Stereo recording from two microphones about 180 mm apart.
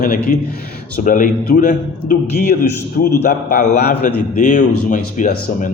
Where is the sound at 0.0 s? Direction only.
50° left (ahead or behind).